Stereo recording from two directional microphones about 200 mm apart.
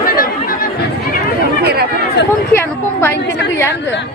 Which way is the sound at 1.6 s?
55° right (ahead or behind).